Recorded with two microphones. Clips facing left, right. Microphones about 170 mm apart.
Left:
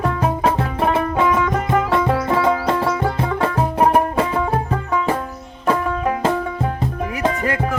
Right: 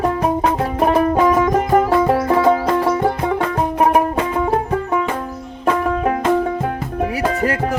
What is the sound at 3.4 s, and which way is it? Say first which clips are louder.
Music: even; 30° left (ahead or behind).